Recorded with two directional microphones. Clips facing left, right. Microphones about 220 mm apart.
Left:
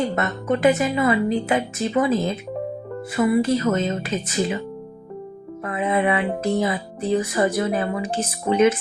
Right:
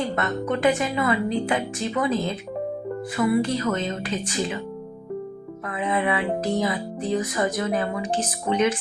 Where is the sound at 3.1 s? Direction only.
25° left (ahead or behind).